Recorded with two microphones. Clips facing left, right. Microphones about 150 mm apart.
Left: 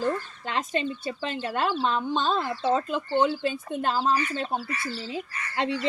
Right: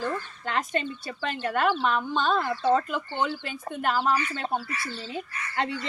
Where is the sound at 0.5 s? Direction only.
25° left (ahead or behind).